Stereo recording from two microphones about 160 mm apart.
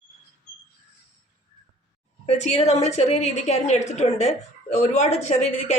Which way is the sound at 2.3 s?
45° left (ahead or behind).